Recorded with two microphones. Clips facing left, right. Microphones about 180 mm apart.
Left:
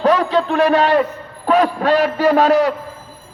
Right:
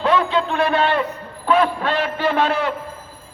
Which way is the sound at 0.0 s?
40° left (ahead or behind).